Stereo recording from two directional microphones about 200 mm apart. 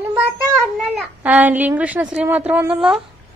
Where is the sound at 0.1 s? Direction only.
Centre (ahead or behind).